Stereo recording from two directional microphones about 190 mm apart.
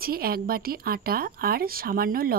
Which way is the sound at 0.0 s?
50° right (ahead or behind).